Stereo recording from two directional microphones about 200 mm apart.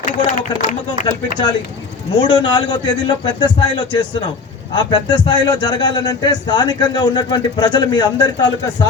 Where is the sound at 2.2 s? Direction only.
20° left (ahead or behind).